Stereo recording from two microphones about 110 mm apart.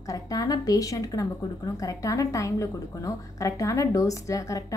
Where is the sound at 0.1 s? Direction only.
35° left (ahead or behind).